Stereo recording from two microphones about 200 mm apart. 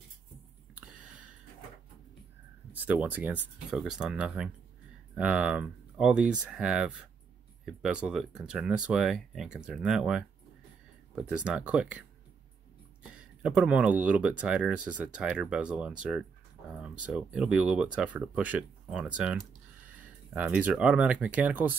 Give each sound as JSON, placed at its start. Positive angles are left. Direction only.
{"t": 0.7, "sound": "a sound", "side_deg": -5}
{"t": 2.7, "sound": "speech", "side_deg": -10}
{"t": 13.4, "sound": "speech", "side_deg": -5}